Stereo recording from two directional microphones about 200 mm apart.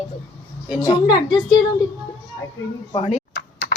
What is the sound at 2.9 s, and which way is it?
Speech, 30° left (ahead or behind).